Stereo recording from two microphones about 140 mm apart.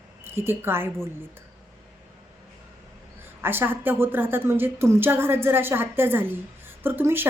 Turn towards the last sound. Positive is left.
turn(degrees=-15)  # may be behind; listen again after turning